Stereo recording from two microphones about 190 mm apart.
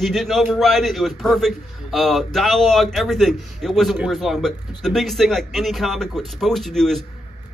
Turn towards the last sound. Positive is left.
turn(degrees=0)  # may be behind; listen again after turning